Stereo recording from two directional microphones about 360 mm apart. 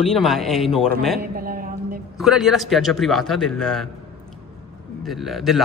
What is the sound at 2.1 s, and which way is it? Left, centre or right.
A man's voice, centre.